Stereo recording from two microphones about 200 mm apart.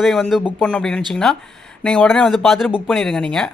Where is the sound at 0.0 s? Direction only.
Centre (ahead or behind).